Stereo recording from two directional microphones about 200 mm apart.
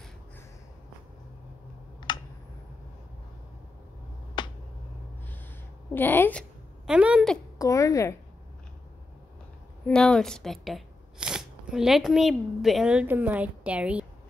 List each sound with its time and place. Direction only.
2.1 s a sound: 20° left (ahead or behind)
4.4 s finger snapping: 25° left (ahead or behind)
5.9 s a woman's voice: 10° left (ahead or behind)
6.9 s a woman's voice: 5° right (ahead or behind)
7.5 s a woman's voice: 15° left (ahead or behind)
9.8 s speech: 5° left (ahead or behind)